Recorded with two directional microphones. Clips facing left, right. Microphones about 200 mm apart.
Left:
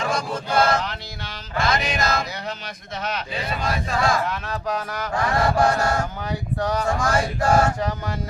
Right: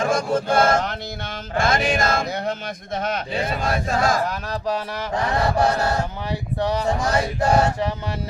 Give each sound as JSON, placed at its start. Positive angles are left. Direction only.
{"t": 0.0, "sound": "a sound", "side_deg": -50}
{"t": 1.5, "sound": "speech", "side_deg": -50}
{"t": 6.6, "sound": "male singing", "side_deg": -25}